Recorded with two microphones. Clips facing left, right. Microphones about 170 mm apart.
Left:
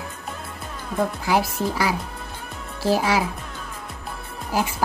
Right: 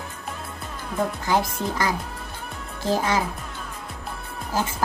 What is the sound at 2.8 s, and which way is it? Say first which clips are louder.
Speech: left 2 dB; 10° left (ahead or behind).